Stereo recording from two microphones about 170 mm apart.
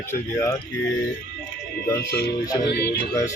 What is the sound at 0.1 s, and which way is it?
Speech, 15° left (ahead or behind).